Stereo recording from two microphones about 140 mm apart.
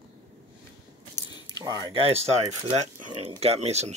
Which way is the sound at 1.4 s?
25° right (ahead or behind).